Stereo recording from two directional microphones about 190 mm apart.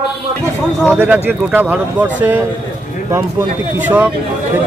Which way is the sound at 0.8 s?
5° right (ahead or behind).